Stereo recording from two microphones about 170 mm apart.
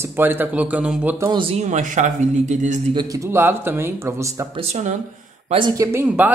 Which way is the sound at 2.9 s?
25° right (ahead or behind).